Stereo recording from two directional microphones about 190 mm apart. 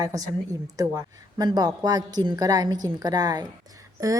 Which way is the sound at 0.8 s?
20° right (ahead or behind).